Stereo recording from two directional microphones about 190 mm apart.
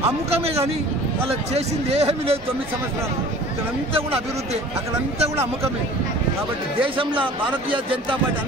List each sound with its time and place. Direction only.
1.3 s speech: 30° right (ahead or behind)
6.8 s speech: 25° right (ahead or behind)